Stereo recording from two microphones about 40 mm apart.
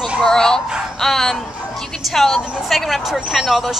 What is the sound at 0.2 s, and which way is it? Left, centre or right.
Dog, centre.